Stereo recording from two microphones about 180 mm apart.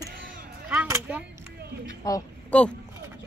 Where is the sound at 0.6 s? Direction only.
10° right (ahead or behind).